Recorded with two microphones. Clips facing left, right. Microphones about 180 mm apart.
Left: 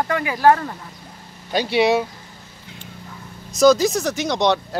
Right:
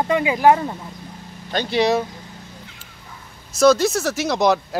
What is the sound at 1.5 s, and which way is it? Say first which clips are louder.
Speech: left 1 dB; 5° left (ahead or behind).